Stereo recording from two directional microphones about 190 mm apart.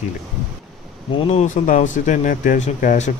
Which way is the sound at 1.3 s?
40° left (ahead or behind).